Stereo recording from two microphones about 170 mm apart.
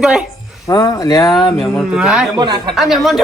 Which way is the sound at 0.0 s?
5° right (ahead or behind).